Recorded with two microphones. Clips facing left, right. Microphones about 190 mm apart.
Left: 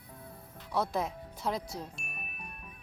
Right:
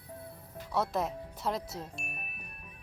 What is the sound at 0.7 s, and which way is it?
Speech, centre (ahead or behind).